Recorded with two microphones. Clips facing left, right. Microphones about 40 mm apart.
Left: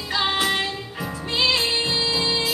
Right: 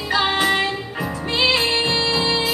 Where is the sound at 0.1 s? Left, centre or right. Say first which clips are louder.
Right 4 dB; centre.